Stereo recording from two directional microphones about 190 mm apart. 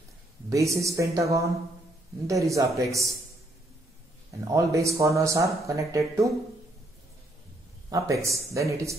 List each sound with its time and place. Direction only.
0.5 s speech: 15° right (ahead or behind)
4.6 s speech: 15° right (ahead or behind)
7.9 s speech: 15° right (ahead or behind)